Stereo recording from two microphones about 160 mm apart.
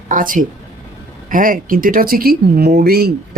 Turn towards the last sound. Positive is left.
turn(degrees=-75)  # may be behind; listen again after turning